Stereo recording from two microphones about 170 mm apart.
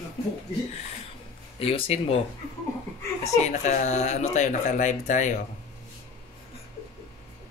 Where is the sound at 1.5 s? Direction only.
35° left (ahead or behind).